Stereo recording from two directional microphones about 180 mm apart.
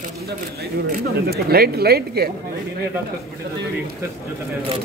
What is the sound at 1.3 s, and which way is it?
Speech, 60° right (ahead or behind).